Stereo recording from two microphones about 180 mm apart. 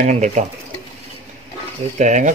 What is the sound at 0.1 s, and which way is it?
Speech, 40° right (ahead or behind).